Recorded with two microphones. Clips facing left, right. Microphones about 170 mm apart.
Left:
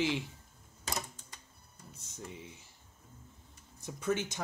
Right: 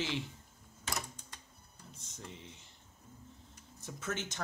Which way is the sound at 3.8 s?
15° left (ahead or behind).